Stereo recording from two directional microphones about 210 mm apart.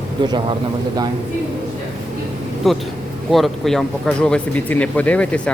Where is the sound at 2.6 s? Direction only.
Centre (ahead or behind).